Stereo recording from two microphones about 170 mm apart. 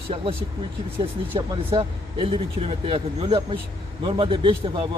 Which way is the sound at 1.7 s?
25° right (ahead or behind).